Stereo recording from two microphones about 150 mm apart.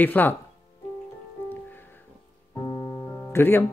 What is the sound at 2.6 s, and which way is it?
Keyboard, 30° left (ahead or behind).